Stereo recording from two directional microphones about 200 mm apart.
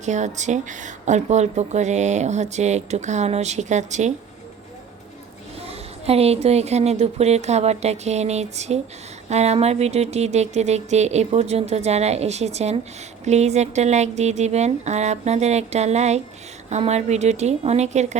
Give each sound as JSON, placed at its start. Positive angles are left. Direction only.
{"t": 0.0, "sound": "speech", "side_deg": -35}
{"t": 5.6, "sound": "speech", "side_deg": -30}